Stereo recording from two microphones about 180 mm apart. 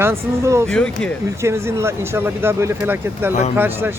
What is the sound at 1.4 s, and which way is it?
Speech, 15° right (ahead or behind).